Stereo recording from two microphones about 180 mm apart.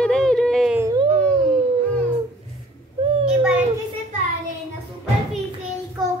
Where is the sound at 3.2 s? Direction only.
5° right (ahead or behind).